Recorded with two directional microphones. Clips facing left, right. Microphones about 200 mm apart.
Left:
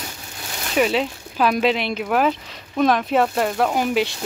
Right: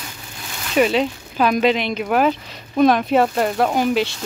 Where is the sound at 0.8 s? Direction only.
Centre (ahead or behind).